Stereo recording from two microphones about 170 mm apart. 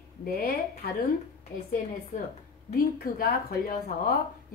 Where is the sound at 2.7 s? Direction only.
60° left (ahead or behind).